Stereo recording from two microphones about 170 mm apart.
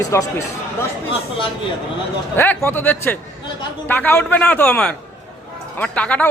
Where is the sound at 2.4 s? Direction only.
10° left (ahead or behind).